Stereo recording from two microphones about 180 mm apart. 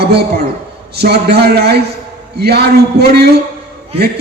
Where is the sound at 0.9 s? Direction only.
65° right (ahead or behind).